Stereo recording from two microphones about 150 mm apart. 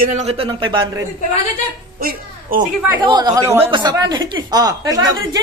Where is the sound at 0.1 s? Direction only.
45° right (ahead or behind).